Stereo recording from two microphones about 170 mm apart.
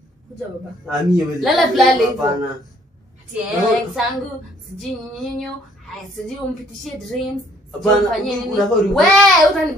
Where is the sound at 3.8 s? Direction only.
Centre (ahead or behind).